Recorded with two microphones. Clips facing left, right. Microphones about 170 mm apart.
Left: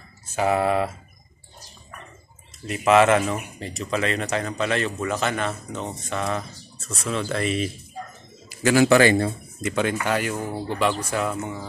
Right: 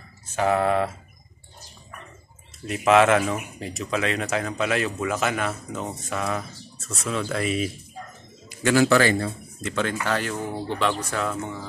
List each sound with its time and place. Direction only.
0.4 s speech: 5° left (ahead or behind)
2.6 s speech: centre (ahead or behind)
8.5 s a sound: 5° left (ahead or behind)
8.8 s a man's voice: 20° left (ahead or behind)